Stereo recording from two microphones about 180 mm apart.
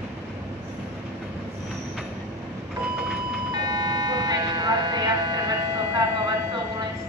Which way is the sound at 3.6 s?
20° right (ahead or behind).